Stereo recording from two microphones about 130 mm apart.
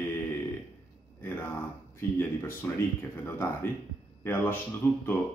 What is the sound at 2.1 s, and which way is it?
Speech, 15° left (ahead or behind).